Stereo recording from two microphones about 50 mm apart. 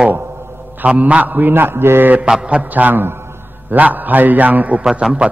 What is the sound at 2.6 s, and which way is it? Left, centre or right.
Speech, right.